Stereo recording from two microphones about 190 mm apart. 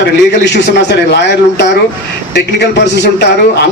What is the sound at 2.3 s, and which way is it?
Speech, 65° left (ahead or behind).